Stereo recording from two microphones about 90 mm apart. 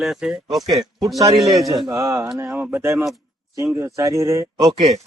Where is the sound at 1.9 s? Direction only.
35° right (ahead or behind).